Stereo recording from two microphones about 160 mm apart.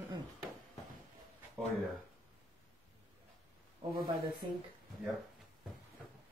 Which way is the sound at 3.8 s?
35° right (ahead or behind).